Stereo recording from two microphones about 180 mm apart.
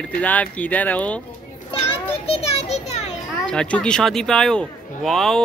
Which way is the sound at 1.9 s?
30° left (ahead or behind).